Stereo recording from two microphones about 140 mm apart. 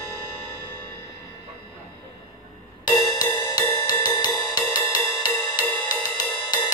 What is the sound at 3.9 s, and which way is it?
Music, 30° left (ahead or behind).